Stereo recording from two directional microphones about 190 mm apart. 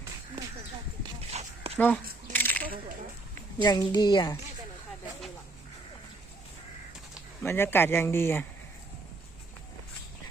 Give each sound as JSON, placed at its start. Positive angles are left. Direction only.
{"t": 1.3, "sound": "dog", "side_deg": -35}
{"t": 2.3, "sound": "a sound", "side_deg": 10}
{"t": 3.6, "sound": "a woman's voice", "side_deg": 20}
{"t": 7.4, "sound": "speech", "side_deg": 10}